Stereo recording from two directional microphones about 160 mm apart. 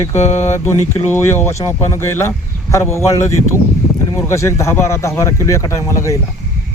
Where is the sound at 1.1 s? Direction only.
15° left (ahead or behind).